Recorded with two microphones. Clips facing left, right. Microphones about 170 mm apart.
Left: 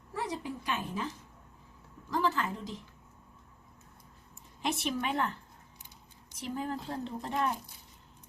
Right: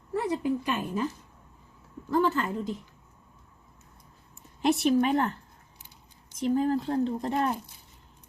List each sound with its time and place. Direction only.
0.1 s a woman's voice: 55° right (ahead or behind)
2.0 s a woman's voice: 55° right (ahead or behind)
4.6 s a woman's voice: 45° right (ahead or behind)
6.4 s a woman's voice: 45° right (ahead or behind)